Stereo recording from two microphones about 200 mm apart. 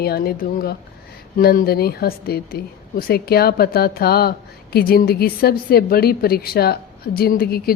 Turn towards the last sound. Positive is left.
turn(degrees=50)  # may be behind; listen again after turning